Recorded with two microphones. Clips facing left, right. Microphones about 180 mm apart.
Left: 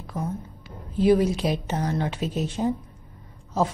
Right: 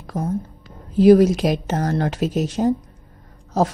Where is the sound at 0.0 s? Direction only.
40° right (ahead or behind).